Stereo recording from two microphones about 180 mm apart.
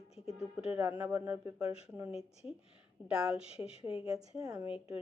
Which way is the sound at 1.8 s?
10° right (ahead or behind).